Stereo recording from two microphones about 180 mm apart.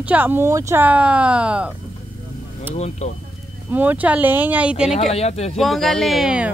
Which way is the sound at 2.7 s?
40° left (ahead or behind).